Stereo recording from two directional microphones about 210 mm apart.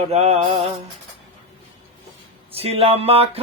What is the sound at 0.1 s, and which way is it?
Music, 30° right (ahead or behind).